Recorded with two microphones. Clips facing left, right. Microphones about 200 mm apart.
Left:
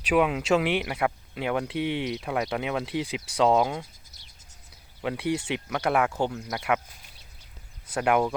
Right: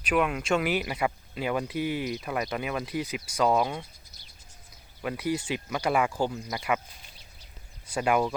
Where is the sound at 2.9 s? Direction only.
90° left.